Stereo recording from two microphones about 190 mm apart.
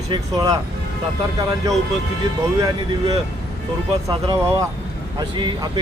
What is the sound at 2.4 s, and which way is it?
Speech, 20° right (ahead or behind).